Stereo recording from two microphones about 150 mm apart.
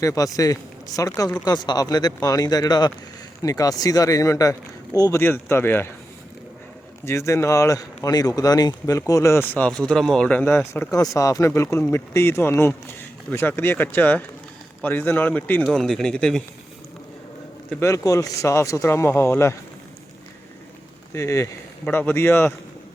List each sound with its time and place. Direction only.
0.0 s speech: 20° left (ahead or behind)
7.0 s speech: 20° left (ahead or behind)
10.8 s speech: 20° left (ahead or behind)
15.6 s speech: centre (ahead or behind)
17.7 s speech: 15° left (ahead or behind)
21.1 s speech: 20° left (ahead or behind)